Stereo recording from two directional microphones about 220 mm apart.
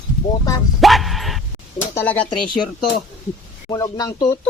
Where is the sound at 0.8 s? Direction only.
Centre (ahead or behind).